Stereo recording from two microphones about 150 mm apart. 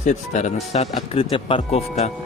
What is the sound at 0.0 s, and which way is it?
Speech, 50° left (ahead or behind).